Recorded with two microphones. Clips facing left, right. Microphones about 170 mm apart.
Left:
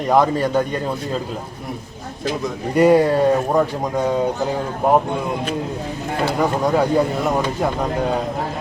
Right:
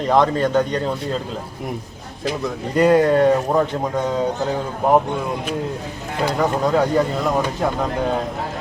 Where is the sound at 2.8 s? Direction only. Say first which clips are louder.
Even; 10° left (ahead or behind).